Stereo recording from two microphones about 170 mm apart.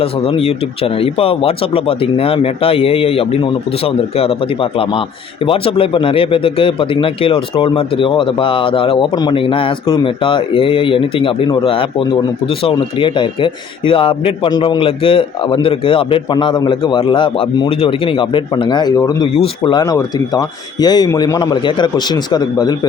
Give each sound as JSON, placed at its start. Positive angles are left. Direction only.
{"t": 0.0, "sound": "a man's voice", "side_deg": 35}